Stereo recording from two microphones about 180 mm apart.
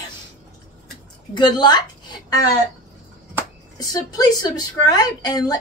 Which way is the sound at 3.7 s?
20° left (ahead or behind).